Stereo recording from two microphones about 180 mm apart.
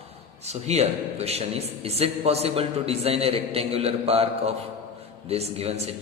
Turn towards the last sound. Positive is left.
turn(degrees=-35)  # may be behind; listen again after turning